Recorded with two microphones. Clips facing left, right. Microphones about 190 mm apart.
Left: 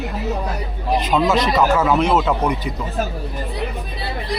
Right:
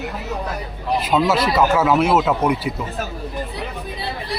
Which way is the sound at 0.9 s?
5° right (ahead or behind).